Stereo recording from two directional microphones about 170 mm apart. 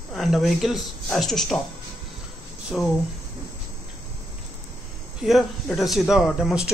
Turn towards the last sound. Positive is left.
turn(degrees=0)  # may be behind; listen again after turning